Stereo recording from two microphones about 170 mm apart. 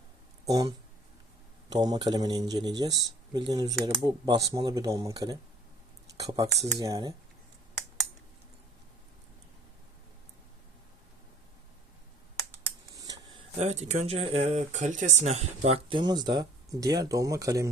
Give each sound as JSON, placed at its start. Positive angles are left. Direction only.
{"t": 0.4, "sound": "speech", "side_deg": -20}
{"t": 1.7, "sound": "speech", "side_deg": -25}
{"t": 12.9, "sound": "a sound", "side_deg": -20}
{"t": 13.6, "sound": "speech", "side_deg": -40}